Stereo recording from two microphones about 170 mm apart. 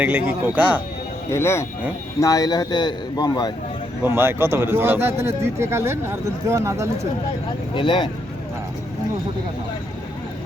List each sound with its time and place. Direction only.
0.0 s speech: 10° right (ahead or behind)
1.3 s a man's voice: 15° left (ahead or behind)
4.0 s speech: 15° right (ahead or behind)
7.7 s a man's voice: 30° left (ahead or behind)